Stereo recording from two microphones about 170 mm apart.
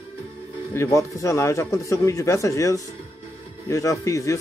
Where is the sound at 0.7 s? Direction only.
15° left (ahead or behind).